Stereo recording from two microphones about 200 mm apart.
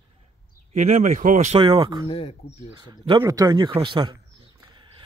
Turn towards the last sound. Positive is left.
turn(degrees=-25)  # may be behind; listen again after turning